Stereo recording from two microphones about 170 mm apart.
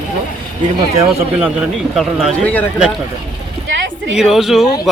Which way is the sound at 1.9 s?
5° left (ahead or behind).